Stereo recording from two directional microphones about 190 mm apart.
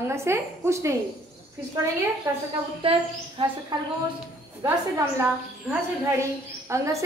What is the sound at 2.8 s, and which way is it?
Speech, 30° right (ahead or behind).